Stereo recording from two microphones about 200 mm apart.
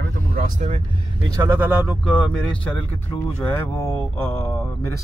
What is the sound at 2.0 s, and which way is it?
Speech, 5° left (ahead or behind).